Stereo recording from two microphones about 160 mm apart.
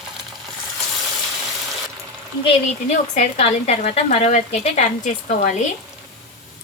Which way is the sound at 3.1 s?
40° left (ahead or behind).